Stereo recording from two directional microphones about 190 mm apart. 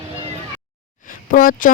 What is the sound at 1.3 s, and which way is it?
Speech, 45° left (ahead or behind).